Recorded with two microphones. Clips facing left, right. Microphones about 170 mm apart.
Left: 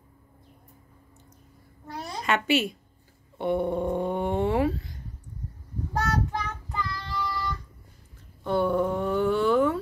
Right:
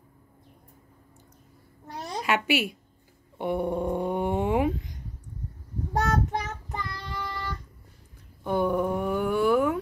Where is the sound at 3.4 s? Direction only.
10° right (ahead or behind).